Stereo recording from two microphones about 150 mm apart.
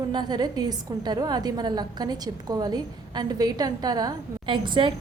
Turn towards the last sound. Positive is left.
turn(degrees=-35)  # may be behind; listen again after turning